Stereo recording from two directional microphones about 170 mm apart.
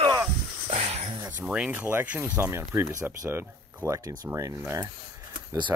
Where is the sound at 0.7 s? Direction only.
40° right (ahead or behind).